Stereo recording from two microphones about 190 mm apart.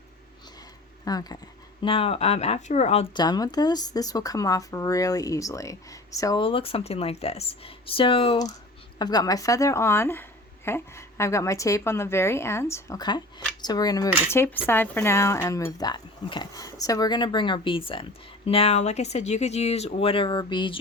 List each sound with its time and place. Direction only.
1.0 s speech: 20° left (ahead or behind); by 3.1 s 35° left (ahead or behind)
3.2 s a woman's voice: 20° left (ahead or behind)